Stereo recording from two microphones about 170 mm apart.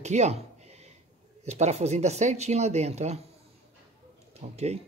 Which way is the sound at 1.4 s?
40° right (ahead or behind).